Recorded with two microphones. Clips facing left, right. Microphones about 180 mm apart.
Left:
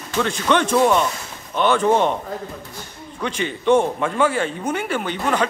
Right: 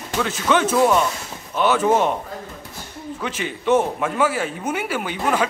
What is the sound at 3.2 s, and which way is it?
Speech, 5° right (ahead or behind).